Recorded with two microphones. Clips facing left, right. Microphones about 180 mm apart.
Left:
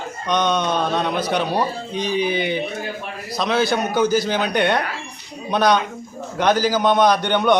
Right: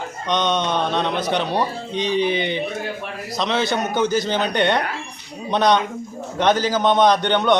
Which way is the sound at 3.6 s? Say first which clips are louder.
Left 3 dB; 20° right (ahead or behind).